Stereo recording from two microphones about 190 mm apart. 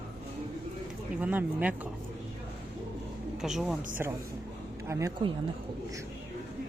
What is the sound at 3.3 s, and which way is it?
A woman's voice, centre (ahead or behind).